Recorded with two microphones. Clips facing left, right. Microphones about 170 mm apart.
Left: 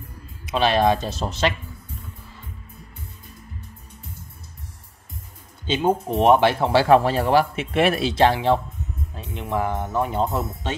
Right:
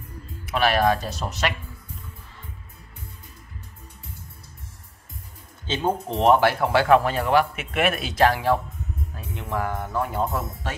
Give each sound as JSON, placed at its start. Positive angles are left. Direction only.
{"t": 0.5, "sound": "speech", "side_deg": 20}
{"t": 5.7, "sound": "speech", "side_deg": 10}